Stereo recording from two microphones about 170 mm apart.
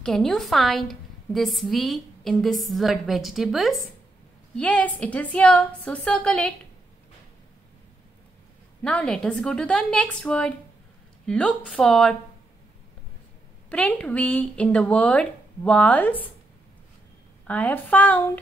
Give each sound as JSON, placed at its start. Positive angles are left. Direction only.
{"t": 0.0, "sound": "a woman's voice", "side_deg": 5}
{"t": 8.8, "sound": "a woman's voice", "side_deg": 5}
{"t": 13.7, "sound": "speech", "side_deg": 10}
{"t": 17.5, "sound": "speech", "side_deg": 10}